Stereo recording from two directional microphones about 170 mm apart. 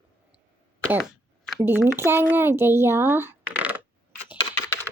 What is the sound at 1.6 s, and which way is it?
Speech, 15° right (ahead or behind).